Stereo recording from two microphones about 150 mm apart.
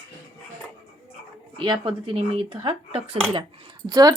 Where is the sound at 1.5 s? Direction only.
35° right (ahead or behind).